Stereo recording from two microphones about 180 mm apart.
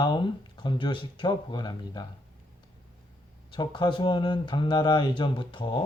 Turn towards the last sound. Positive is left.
turn(degrees=25)  # may be behind; listen again after turning